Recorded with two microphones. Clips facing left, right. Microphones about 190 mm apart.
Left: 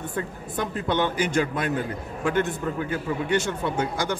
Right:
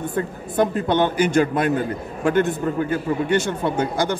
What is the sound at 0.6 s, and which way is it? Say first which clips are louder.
A man's voice: right 6 dB; 55° right (ahead or behind).